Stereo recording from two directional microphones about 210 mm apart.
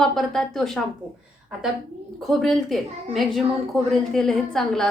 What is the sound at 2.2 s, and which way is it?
A woman's voice, centre (ahead or behind).